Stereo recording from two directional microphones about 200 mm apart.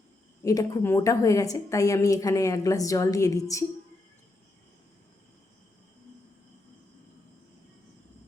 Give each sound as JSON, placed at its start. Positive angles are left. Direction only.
{"t": 0.4, "sound": "a woman's voice", "side_deg": 15}